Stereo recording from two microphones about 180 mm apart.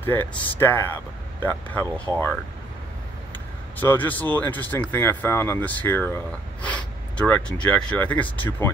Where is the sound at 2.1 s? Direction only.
20° right (ahead or behind).